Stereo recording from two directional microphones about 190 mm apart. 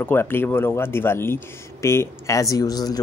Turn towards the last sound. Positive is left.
turn(degrees=20)  # may be behind; listen again after turning